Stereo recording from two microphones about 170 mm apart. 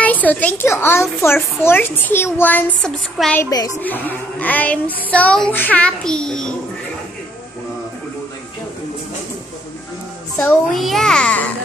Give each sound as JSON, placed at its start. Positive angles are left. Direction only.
{"t": 0.0, "sound": "speech", "side_deg": 10}
{"t": 3.4, "sound": "a woman's voice", "side_deg": 20}
{"t": 10.3, "sound": "a child's voice", "side_deg": 10}